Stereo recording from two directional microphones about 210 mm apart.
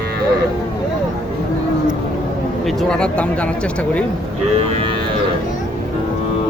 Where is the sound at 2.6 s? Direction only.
Centre (ahead or behind).